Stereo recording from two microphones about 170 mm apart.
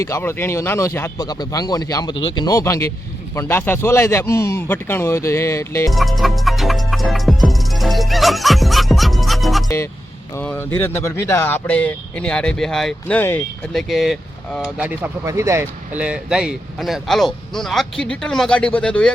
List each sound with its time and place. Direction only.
0.0 s speech: 15° left (ahead or behind)
5.9 s music: centre (ahead or behind)
9.6 s speech: 15° left (ahead or behind)
13.8 s speech: centre (ahead or behind)